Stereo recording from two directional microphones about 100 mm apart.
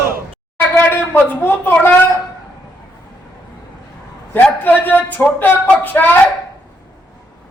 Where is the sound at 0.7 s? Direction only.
20° left (ahead or behind).